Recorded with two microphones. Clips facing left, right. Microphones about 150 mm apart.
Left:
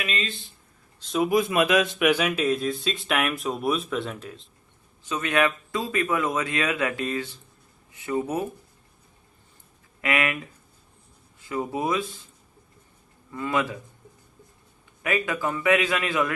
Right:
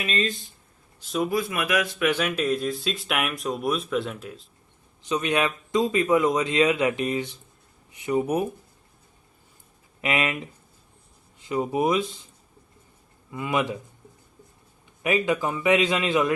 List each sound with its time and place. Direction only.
0.0 s speech: 35° right (ahead or behind)
1.3 s a man's voice: 20° left (ahead or behind)
2.0 s speech: 10° left (ahead or behind)
5.0 s speech: 20° right (ahead or behind)
10.0 s speech: 20° right (ahead or behind)
13.3 s speech: 15° right (ahead or behind)
15.0 s speech: 20° right (ahead or behind)